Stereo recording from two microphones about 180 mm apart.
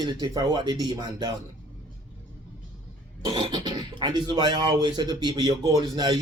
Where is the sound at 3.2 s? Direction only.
25° right (ahead or behind).